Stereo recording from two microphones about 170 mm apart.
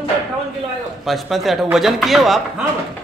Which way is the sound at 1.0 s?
Centre (ahead or behind).